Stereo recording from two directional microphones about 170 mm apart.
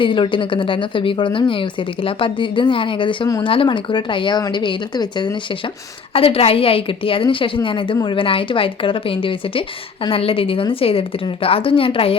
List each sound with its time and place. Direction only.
0.0 s speech: 30° left (ahead or behind)